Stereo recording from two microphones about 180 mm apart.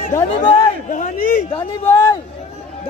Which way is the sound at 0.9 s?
50° left (ahead or behind).